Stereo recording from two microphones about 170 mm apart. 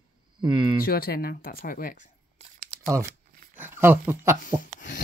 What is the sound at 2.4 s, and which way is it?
Crumpling, 40° right (ahead or behind).